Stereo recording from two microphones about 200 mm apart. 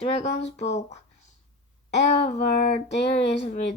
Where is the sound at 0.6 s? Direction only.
35° left (ahead or behind).